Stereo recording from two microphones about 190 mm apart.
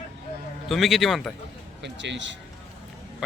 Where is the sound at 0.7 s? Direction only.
Centre (ahead or behind).